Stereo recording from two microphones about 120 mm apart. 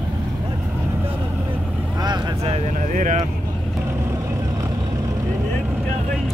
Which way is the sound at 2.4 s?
75° right (ahead or behind).